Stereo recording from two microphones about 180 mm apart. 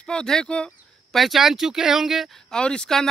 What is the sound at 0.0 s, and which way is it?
Speech, 5° left (ahead or behind).